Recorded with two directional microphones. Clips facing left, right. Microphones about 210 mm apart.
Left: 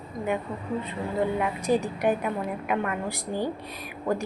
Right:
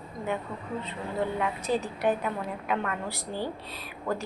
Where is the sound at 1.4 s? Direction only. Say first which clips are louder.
Left 4 dB; 15° left (ahead or behind).